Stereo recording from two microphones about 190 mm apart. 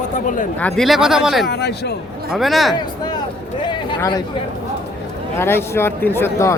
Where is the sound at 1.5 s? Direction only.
60° left (ahead or behind).